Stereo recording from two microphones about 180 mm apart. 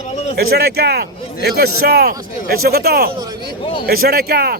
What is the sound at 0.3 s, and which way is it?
A man's voice, 60° right (ahead or behind).